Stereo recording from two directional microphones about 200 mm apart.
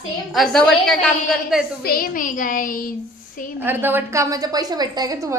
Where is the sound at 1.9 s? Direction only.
45° left (ahead or behind).